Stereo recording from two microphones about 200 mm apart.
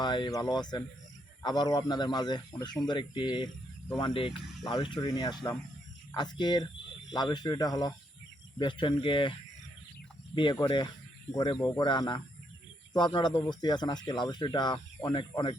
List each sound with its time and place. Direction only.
0.0 s speech: 20° left (ahead or behind)
10.3 s speech: 25° left (ahead or behind)